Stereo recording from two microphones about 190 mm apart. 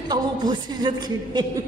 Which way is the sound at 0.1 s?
20° right (ahead or behind).